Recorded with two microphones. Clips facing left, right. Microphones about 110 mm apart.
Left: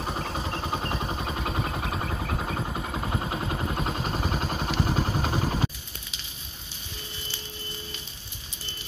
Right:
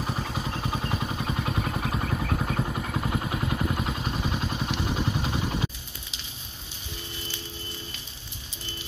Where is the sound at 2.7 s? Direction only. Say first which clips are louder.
Right 1 dB; 15° left (ahead or behind); by 5.7 s 40° left (ahead or behind).